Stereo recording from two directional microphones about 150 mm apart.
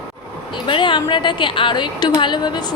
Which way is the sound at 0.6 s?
35° left (ahead or behind).